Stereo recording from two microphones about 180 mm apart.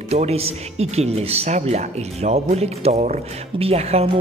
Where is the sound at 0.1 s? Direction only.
35° right (ahead or behind).